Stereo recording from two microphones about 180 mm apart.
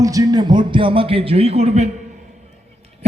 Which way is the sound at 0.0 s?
20° right (ahead or behind).